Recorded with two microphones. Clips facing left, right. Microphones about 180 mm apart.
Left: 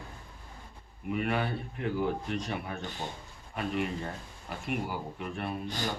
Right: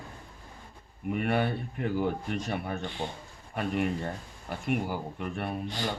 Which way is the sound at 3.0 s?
55° right (ahead or behind).